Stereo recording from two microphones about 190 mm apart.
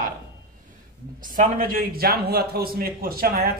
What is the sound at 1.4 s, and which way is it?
A man's voice, 50° right (ahead or behind).